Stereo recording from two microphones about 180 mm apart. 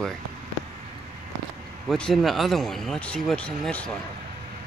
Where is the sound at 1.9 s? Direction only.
Centre (ahead or behind).